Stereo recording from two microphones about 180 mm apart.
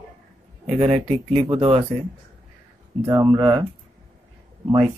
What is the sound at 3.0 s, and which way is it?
Speech, 25° right (ahead or behind).